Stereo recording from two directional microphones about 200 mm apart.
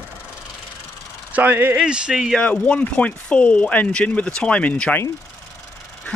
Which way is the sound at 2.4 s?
5° left (ahead or behind).